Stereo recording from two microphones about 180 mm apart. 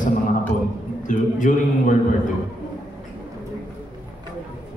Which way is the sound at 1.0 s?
45° left (ahead or behind).